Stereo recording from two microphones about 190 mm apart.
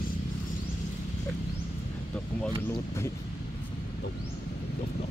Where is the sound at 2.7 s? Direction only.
15° left (ahead or behind).